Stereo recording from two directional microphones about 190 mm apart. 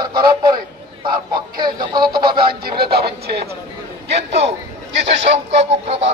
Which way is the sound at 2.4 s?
55° right (ahead or behind).